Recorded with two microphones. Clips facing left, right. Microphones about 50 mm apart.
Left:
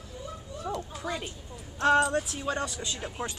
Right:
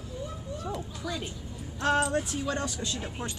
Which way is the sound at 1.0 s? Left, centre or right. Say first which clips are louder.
Left 1 dB; left.